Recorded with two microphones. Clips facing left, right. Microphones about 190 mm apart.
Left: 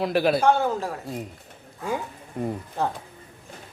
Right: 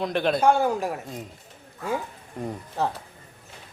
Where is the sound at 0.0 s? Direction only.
5° left (ahead or behind).